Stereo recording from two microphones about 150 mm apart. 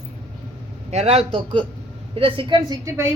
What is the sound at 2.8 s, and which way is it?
Speech, 20° right (ahead or behind).